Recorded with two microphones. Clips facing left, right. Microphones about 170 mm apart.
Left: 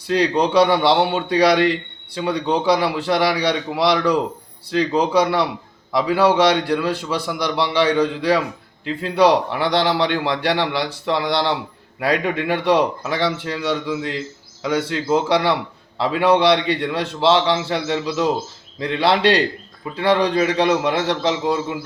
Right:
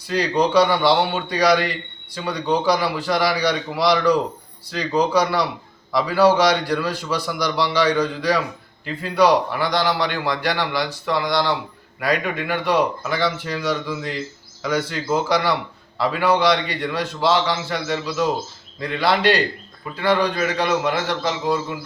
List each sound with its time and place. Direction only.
0.1 s a man's voice: 25° left (ahead or behind)